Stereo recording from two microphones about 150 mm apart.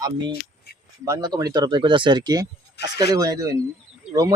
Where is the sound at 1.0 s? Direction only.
25° right (ahead or behind).